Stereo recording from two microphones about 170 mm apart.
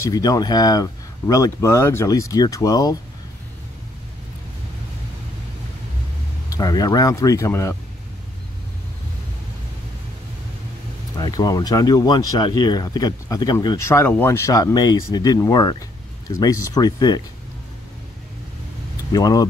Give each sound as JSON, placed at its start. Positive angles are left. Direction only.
{"t": 0.0, "sound": "speech", "side_deg": 20}
{"t": 6.5, "sound": "speech", "side_deg": 20}
{"t": 11.1, "sound": "speech", "side_deg": 20}
{"t": 19.1, "sound": "speech", "side_deg": 25}